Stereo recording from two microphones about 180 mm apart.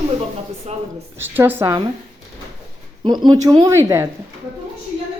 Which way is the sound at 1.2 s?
10° right (ahead or behind).